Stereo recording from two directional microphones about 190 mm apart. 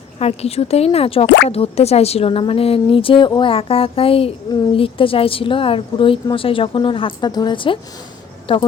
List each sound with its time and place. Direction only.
0.2 s speech: 30° left (ahead or behind)